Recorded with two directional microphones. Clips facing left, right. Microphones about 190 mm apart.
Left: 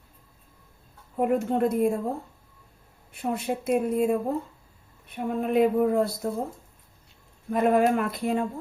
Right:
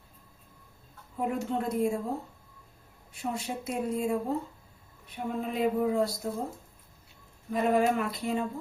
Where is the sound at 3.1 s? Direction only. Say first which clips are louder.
Left 6 dB; 60° left (ahead or behind).